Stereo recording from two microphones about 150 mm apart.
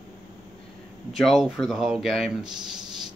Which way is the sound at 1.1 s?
Centre (ahead or behind).